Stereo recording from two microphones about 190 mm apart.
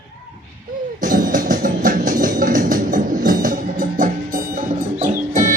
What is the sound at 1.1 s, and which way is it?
Music, 45° right (ahead or behind).